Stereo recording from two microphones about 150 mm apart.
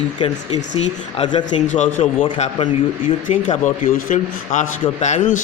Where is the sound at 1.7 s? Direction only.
55° left (ahead or behind).